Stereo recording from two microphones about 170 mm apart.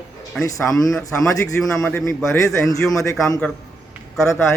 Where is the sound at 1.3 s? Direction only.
20° left (ahead or behind).